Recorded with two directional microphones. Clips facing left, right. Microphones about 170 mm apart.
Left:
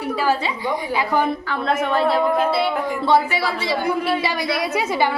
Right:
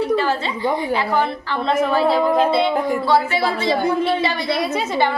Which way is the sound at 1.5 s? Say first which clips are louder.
Right 2 dB; centre (ahead or behind).